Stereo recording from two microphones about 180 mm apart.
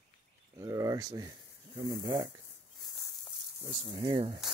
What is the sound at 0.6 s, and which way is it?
Speech, 20° right (ahead or behind).